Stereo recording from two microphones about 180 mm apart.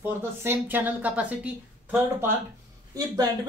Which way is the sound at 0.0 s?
10° right (ahead or behind).